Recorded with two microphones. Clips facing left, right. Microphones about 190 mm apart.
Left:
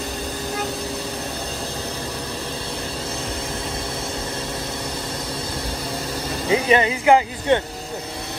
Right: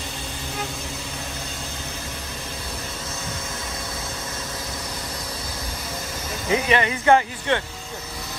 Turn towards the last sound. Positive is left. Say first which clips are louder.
# left 3 dB
turn(degrees=15)  # may be behind; listen again after turning